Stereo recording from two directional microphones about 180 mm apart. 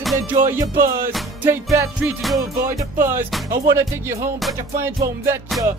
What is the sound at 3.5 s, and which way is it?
Music, 15° right (ahead or behind).